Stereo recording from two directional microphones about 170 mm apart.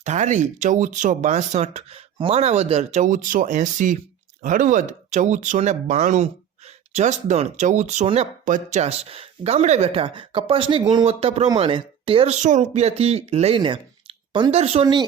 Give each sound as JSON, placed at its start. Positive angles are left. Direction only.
{"t": 0.0, "sound": "speech", "side_deg": -45}